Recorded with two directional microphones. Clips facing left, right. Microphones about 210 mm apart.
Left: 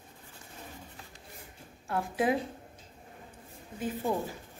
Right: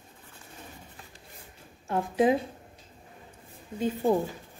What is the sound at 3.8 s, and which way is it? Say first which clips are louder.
Speech: right 6 dB; 25° right (ahead or behind).